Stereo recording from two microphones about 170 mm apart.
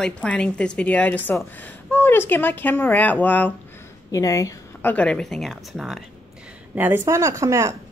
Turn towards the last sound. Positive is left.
turn(degrees=-20)  # may be behind; listen again after turning